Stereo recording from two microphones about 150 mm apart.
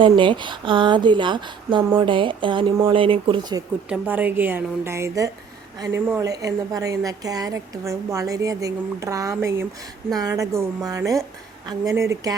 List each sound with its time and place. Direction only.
0.2 s speech: 35° right (ahead or behind)
3.8 s a woman's voice: 10° right (ahead or behind)